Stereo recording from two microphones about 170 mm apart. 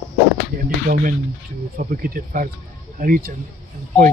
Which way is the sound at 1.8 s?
55° right (ahead or behind).